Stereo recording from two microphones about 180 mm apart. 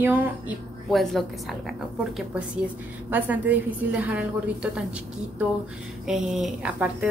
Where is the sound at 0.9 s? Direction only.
Centre (ahead or behind).